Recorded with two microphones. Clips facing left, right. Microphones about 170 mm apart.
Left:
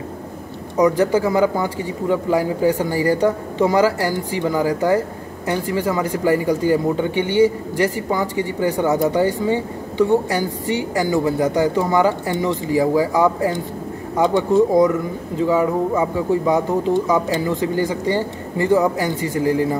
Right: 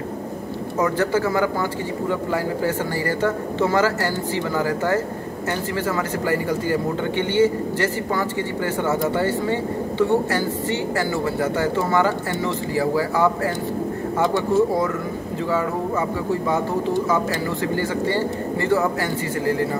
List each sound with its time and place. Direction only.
0.7 s speech: 15° left (ahead or behind)